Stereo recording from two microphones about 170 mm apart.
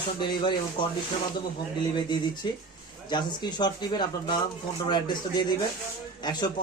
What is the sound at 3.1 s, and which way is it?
A man's voice, 25° left (ahead or behind).